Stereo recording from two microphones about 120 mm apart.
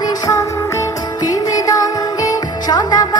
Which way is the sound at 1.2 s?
30° left (ahead or behind).